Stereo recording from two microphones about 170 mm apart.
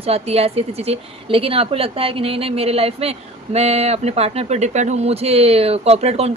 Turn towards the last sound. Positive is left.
turn(degrees=-40)  # may be behind; listen again after turning